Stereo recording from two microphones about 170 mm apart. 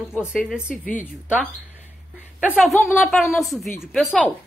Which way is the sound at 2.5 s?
Centre (ahead or behind).